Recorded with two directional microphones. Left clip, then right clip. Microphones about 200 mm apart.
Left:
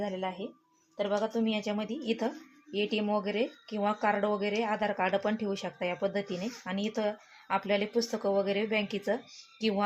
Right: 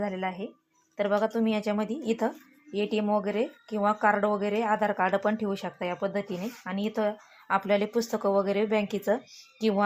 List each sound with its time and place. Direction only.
0.0 s a woman's voice: 20° right (ahead or behind)